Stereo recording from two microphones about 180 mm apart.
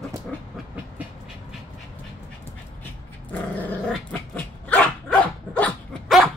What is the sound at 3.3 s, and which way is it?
Dog, 10° left (ahead or behind).